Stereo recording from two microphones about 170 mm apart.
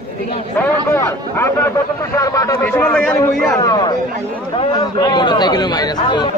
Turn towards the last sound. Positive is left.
turn(degrees=25)  # may be behind; listen again after turning